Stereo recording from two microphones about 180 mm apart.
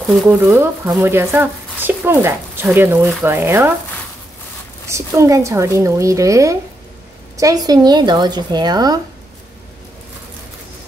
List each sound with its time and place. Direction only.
0.3 s speech: 15° right (ahead or behind)
4.8 s a woman's voice: 15° right (ahead or behind)